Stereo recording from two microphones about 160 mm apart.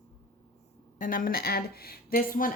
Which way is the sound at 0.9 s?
55° left (ahead or behind).